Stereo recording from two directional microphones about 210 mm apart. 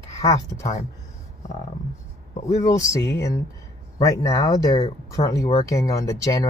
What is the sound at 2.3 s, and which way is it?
Speech, 30° left (ahead or behind).